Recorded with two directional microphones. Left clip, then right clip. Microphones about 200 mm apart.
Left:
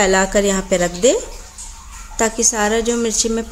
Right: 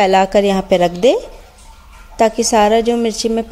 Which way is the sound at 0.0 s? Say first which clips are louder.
Right 3 dB; 25° right (ahead or behind).